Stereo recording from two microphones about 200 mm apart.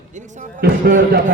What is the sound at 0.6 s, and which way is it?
Speech, 50° right (ahead or behind).